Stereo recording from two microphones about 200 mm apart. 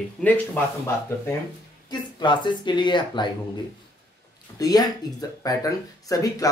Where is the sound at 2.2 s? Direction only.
25° left (ahead or behind).